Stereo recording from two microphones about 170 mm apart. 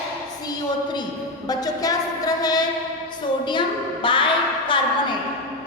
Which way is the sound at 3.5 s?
30° left (ahead or behind).